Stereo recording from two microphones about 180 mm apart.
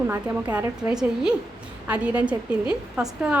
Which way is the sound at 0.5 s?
5° right (ahead or behind).